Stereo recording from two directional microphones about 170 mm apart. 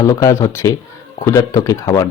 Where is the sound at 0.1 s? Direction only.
20° left (ahead or behind).